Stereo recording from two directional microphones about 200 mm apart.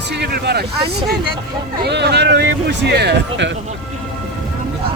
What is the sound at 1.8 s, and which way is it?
Speech, 55° right (ahead or behind).